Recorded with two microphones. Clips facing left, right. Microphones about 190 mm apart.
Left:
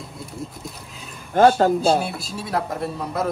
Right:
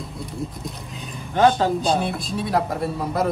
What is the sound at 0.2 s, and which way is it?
Speech, centre (ahead or behind).